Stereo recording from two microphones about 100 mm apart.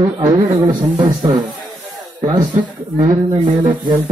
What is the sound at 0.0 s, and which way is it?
A man's voice, 40° right (ahead or behind).